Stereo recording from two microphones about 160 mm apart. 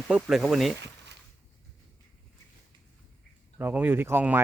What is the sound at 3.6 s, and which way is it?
Speech, 10° right (ahead or behind).